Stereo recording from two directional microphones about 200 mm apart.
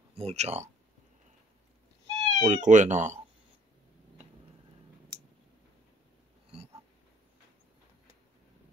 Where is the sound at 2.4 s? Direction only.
40° right (ahead or behind).